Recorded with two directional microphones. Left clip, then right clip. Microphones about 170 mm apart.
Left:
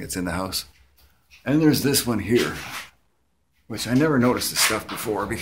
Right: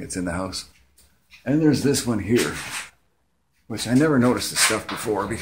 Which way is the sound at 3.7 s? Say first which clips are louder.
Right 1 dB; 15° right (ahead or behind).